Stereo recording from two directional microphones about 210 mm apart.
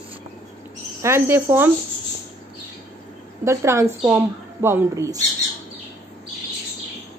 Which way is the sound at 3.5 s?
15° right (ahead or behind).